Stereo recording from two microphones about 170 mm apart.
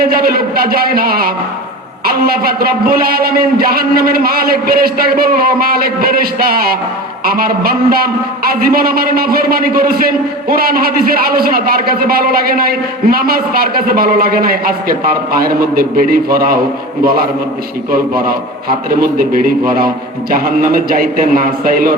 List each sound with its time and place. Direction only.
0.0 s a man's voice: 60° right (ahead or behind)
17.9 s a man's voice: 60° right (ahead or behind)